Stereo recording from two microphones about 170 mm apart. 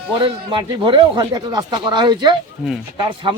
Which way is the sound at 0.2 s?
30° right (ahead or behind).